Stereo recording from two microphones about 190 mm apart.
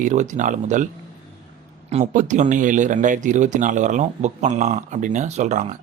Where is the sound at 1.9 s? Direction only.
35° right (ahead or behind).